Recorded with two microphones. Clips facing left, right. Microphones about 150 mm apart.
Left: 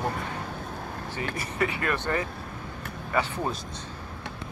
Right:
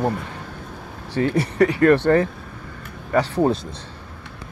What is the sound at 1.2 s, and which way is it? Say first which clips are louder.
Speech: right 12 dB; 35° right (ahead or behind).